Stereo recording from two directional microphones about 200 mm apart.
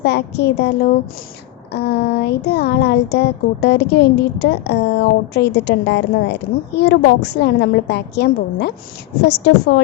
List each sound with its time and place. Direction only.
0.0 s speech: 55° left (ahead or behind)
1.7 s speech: 55° left (ahead or behind)